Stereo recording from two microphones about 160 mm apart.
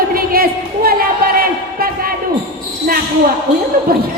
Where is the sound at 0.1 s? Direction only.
65° right (ahead or behind).